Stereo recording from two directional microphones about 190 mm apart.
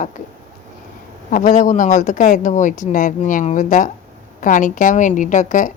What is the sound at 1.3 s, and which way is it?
Speech, 45° left (ahead or behind).